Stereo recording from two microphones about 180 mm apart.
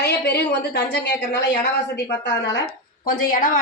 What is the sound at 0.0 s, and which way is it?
A woman's voice, 65° left (ahead or behind).